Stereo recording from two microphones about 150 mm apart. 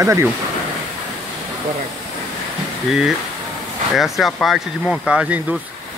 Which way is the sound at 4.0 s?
Centre (ahead or behind).